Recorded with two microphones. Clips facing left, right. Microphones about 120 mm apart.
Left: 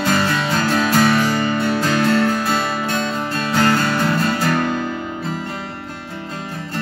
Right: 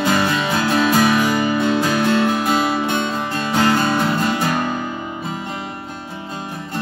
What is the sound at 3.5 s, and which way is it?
Music, 15° right (ahead or behind).